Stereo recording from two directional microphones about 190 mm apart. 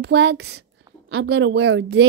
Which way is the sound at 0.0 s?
65° right (ahead or behind).